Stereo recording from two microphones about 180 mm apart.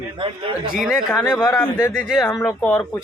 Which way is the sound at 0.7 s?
Centre (ahead or behind).